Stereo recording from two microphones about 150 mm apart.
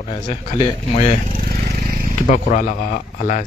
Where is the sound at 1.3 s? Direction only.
75° right (ahead or behind).